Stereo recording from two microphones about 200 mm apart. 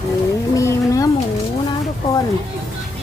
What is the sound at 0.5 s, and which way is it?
Speech, 15° left (ahead or behind).